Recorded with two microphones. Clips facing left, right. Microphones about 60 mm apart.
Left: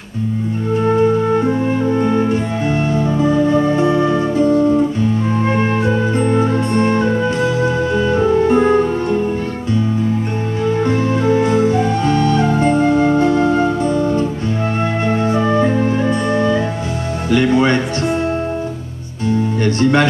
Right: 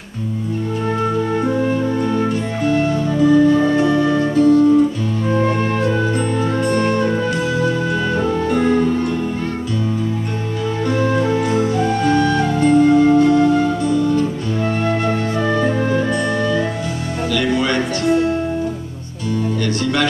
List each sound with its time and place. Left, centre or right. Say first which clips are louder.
1.4 s music: left 1 dB; left
10.6 s music: left 3 dB; left
11.7 s flute: left 1 dB; left
14.9 s music: left 2 dB; left
19.6 s music: left 6 dB; left